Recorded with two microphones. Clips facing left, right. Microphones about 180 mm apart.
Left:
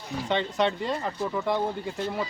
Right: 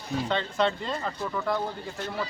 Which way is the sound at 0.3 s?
20° left (ahead or behind).